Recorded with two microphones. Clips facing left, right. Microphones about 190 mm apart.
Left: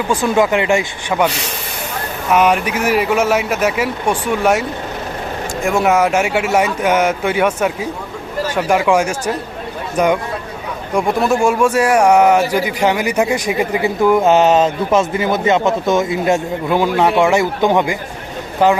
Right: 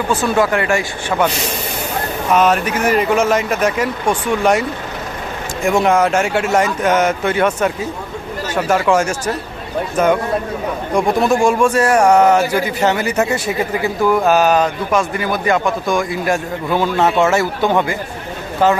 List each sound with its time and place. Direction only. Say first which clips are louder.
0.1 s speech: left 2 dB; 15° left (ahead or behind)
2.3 s speech: even; 10° left (ahead or behind)
5.6 s speech: right 1 dB; 5° left (ahead or behind)
10.9 s speech: even; centre (ahead or behind)